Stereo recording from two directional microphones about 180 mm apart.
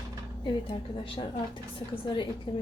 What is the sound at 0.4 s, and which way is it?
Speech, 30° left (ahead or behind).